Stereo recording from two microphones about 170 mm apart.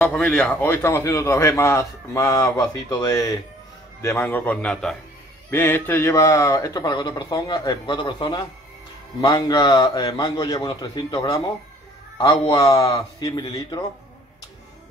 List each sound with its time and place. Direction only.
0.0 s speech: 10° left (ahead or behind)
0.6 s a man's voice: 15° left (ahead or behind)